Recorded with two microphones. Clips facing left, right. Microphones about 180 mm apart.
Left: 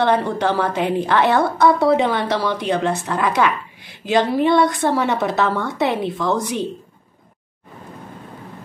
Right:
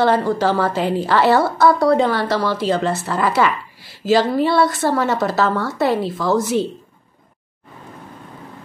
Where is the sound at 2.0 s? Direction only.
20° left (ahead or behind).